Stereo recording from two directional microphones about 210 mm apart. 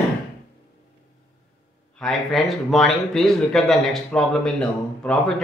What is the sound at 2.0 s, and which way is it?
A man's voice, centre (ahead or behind).